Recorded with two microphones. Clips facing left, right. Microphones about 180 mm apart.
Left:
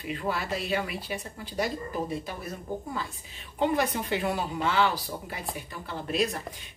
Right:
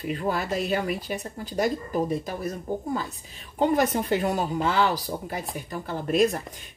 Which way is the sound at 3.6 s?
45° right (ahead or behind).